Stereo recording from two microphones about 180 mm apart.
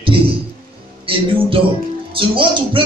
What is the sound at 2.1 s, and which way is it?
Music, 30° right (ahead or behind).